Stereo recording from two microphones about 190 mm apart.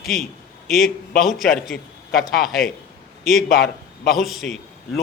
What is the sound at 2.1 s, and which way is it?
Speech, 50° left (ahead or behind).